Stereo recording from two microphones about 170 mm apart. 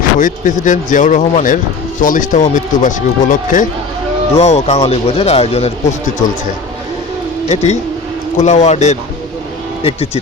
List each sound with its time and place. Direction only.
0.2 s speech: 50° left (ahead or behind)
4.4 s speech: 40° left (ahead or behind)
7.4 s speech: 40° left (ahead or behind)